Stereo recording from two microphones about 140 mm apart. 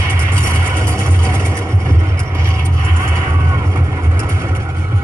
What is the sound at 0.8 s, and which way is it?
Music, 20° right (ahead or behind).